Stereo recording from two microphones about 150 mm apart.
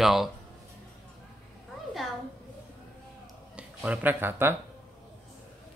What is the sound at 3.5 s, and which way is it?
Speech, 10° right (ahead or behind).